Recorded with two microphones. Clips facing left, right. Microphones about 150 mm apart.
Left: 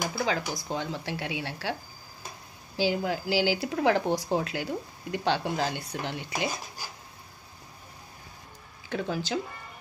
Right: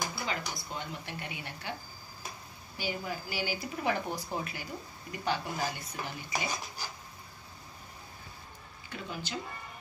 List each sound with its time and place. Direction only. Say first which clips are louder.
0.2 s speech: left 7 dB; 90° left
2.8 s speech: left 9 dB; 85° left
8.8 s speech: left 10 dB; 90° left